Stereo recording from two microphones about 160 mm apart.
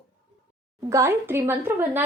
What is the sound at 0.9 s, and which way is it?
A woman's voice, 20° right (ahead or behind).